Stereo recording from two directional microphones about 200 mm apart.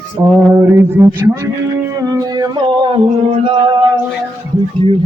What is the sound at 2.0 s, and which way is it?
Music, 20° right (ahead or behind).